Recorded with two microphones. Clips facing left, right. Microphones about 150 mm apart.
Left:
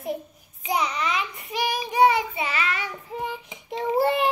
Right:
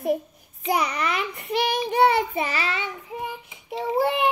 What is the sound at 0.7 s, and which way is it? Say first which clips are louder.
Speech: right 2 dB; 60° right (ahead or behind).